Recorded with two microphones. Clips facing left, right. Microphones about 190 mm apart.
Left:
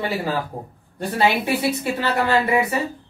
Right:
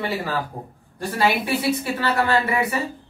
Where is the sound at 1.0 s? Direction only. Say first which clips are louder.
Left 1 dB; 25° left (ahead or behind).